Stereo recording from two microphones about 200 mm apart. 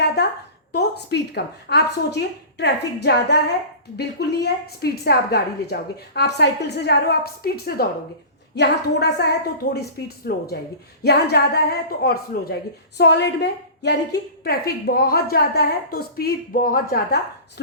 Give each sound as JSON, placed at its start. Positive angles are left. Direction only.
{"t": 0.8, "sound": "a woman's voice", "side_deg": 55}